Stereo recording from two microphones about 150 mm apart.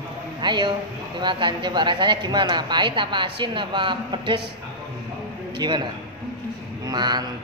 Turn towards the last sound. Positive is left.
turn(degrees=-30)  # may be behind; listen again after turning